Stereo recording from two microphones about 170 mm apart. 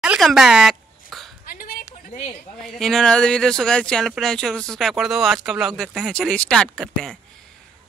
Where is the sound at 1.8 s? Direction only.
40° left (ahead or behind).